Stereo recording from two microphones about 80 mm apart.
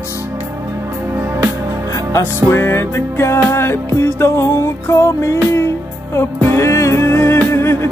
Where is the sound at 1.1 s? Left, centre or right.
Right.